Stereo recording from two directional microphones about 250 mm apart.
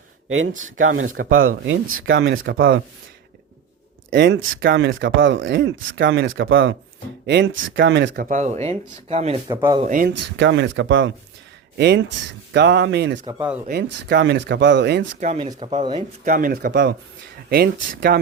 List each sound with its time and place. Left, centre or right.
0.3 s speech: right
4.1 s speech: right; by 9.8 s centre
9.8 s speech: right
10.2 s speech: right
15.2 s speech: right
16.2 s speech: right